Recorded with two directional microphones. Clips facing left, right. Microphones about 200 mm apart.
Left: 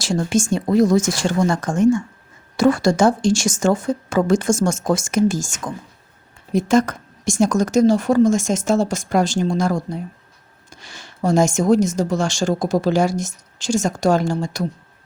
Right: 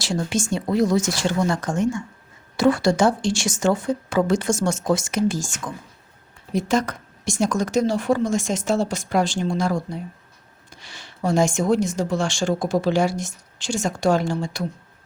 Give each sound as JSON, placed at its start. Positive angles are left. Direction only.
{"t": 0.0, "sound": "speech", "side_deg": 45}